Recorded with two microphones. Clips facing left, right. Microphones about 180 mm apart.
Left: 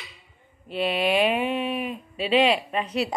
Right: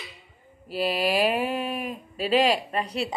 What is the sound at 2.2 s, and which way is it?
Speech, 40° right (ahead or behind).